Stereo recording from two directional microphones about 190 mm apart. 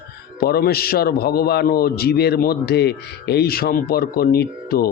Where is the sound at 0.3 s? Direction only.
55° left (ahead or behind).